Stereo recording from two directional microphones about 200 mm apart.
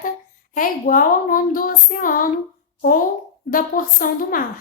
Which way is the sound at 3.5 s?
45° left (ahead or behind).